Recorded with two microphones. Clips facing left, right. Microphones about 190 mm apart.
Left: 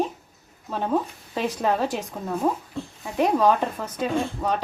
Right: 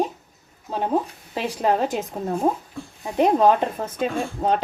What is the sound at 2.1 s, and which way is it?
Speech, 30° right (ahead or behind).